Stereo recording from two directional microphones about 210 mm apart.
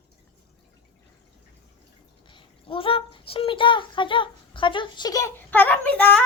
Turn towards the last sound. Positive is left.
turn(degrees=5)  # may be behind; listen again after turning